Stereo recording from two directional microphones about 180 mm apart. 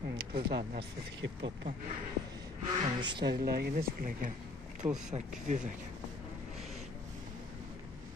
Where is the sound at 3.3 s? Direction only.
60° right (ahead or behind).